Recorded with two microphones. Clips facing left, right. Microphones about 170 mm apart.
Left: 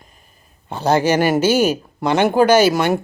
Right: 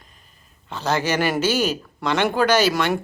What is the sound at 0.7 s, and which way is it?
Speech, 50° left (ahead or behind).